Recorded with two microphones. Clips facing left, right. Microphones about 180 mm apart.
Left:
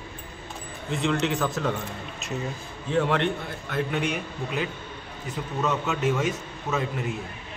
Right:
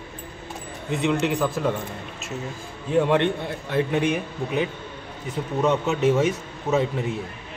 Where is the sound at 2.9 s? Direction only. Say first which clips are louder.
Right 4 dB; 15° right (ahead or behind).